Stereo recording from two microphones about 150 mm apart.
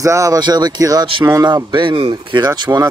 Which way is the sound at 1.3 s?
25° right (ahead or behind).